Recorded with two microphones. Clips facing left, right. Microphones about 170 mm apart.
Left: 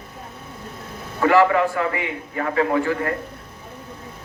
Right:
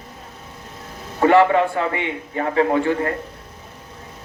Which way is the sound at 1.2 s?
25° right (ahead or behind).